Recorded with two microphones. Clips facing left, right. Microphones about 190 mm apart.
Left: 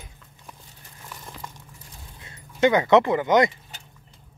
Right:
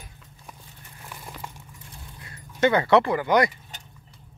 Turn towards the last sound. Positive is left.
turn(degrees=20)  # may be behind; listen again after turning